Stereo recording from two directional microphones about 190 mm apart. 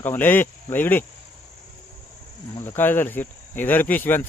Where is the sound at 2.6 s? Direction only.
10° left (ahead or behind).